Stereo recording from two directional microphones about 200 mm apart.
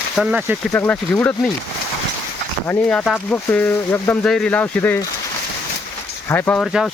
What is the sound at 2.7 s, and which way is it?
Speech, 5° left (ahead or behind).